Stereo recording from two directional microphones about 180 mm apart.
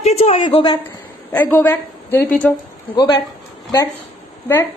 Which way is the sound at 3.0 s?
25° left (ahead or behind).